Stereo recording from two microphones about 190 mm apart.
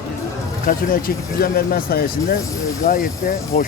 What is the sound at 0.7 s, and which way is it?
Speech, 50° left (ahead or behind).